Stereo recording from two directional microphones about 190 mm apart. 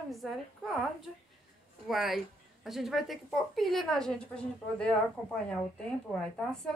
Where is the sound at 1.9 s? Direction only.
Centre (ahead or behind).